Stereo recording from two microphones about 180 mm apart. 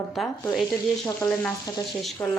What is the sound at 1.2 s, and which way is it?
Frying, 20° left (ahead or behind).